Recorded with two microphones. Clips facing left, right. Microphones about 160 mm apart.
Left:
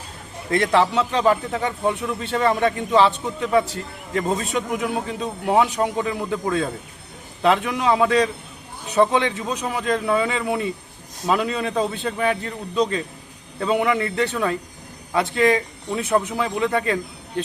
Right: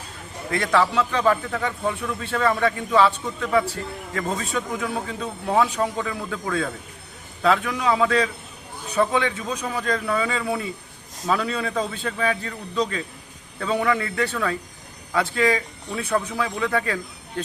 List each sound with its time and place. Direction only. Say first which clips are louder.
0.5 s a man's voice: left 2 dB; 25° left (ahead or behind)